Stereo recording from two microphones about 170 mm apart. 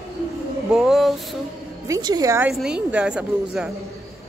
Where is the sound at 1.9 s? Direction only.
20° right (ahead or behind).